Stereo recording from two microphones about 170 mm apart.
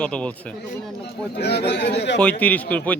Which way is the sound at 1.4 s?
80° left.